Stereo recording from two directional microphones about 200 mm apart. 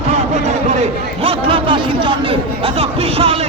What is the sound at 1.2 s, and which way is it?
A man's voice, 25° right (ahead or behind).